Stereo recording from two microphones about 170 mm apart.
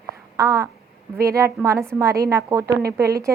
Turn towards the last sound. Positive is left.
turn(degrees=-20)  # may be behind; listen again after turning